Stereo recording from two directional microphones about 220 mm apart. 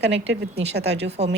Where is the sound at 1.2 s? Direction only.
30° right (ahead or behind).